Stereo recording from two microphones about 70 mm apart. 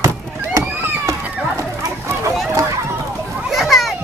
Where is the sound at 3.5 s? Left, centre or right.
Centre.